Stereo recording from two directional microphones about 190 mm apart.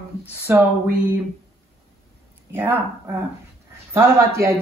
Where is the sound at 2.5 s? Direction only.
10° right (ahead or behind).